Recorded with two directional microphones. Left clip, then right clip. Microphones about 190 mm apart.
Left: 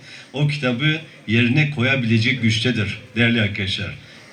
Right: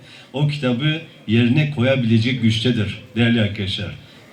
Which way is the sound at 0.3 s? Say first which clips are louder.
Even; 25° left (ahead or behind).